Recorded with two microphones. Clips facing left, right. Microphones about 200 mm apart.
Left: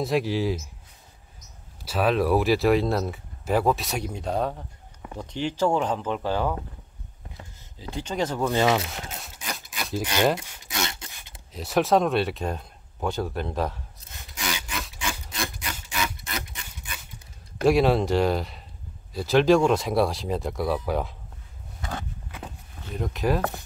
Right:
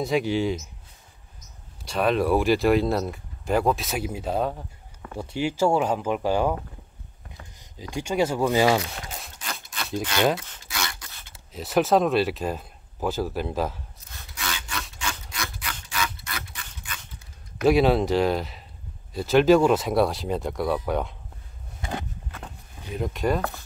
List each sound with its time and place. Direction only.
0.0 s speech: centre (ahead or behind)
1.9 s speech: centre (ahead or behind); by 6.5 s 15° right (ahead or behind)
7.9 s speech: 10° right (ahead or behind)
9.4 s a sound: 15° left (ahead or behind)
10.7 s filing: 25° left (ahead or behind)
11.5 s speech: centre (ahead or behind)
14.1 s sawing: 15° left (ahead or behind)
16.1 s rub: 20° left (ahead or behind)
16.9 s a sound: 10° left (ahead or behind)
17.6 s speech: centre (ahead or behind)
22.8 s speech: centre (ahead or behind)